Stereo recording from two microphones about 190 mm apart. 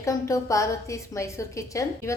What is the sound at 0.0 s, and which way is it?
A woman's voice, 15° left (ahead or behind).